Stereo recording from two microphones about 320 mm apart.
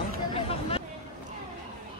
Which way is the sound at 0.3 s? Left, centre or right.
Centre.